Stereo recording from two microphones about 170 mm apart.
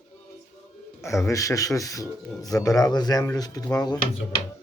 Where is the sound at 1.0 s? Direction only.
15° left (ahead or behind).